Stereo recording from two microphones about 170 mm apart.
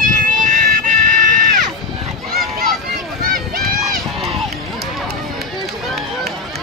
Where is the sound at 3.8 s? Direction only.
Centre (ahead or behind).